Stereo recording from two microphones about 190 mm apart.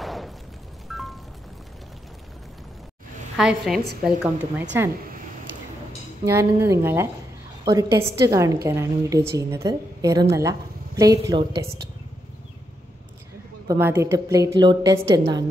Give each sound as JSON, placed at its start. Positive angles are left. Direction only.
{"t": 0.0, "sound": "a sound", "side_deg": 0}
{"t": 0.8, "sound": "music", "side_deg": 0}
{"t": 3.3, "sound": "a woman's voice", "side_deg": 0}
{"t": 6.2, "sound": "a woman's voice", "side_deg": -15}
{"t": 13.7, "sound": "a woman's voice", "side_deg": -15}